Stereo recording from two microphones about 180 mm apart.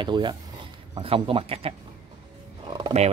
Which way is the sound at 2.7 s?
25° right (ahead or behind).